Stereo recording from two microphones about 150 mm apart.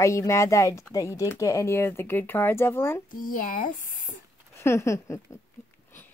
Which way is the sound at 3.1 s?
65° left (ahead or behind).